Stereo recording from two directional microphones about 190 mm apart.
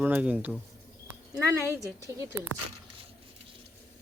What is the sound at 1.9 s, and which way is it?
Speech, 15° right (ahead or behind).